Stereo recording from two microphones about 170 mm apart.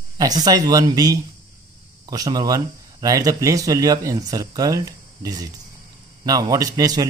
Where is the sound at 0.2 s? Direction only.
25° right (ahead or behind).